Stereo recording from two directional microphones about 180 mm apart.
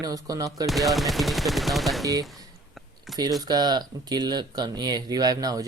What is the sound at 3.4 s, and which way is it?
Speech, 20° right (ahead or behind).